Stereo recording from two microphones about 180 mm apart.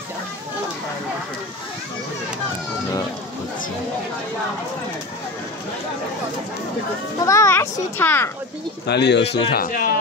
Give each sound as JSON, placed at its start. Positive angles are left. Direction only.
{"t": 7.2, "sound": "a child's voice", "side_deg": 15}
{"t": 8.8, "sound": "speech", "side_deg": 70}
{"t": 9.5, "sound": "speech", "side_deg": 55}